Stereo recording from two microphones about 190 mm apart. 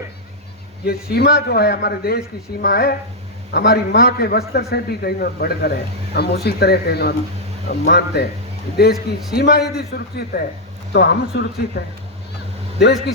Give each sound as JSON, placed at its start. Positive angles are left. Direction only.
{"t": 0.9, "sound": "a man's voice", "side_deg": 55}